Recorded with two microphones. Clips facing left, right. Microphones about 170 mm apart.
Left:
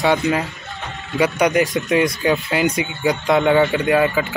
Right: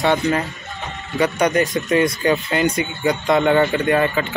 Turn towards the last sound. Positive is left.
turn(degrees=5)  # may be behind; listen again after turning